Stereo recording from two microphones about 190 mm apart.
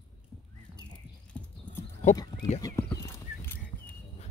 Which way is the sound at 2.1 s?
20° left (ahead or behind).